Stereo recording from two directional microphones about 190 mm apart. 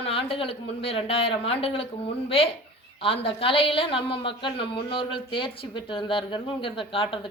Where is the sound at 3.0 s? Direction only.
30° left (ahead or behind).